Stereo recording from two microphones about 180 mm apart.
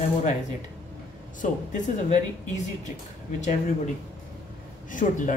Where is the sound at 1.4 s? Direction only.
40° left (ahead or behind).